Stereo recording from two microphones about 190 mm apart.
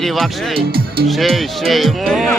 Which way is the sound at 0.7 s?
55° right (ahead or behind).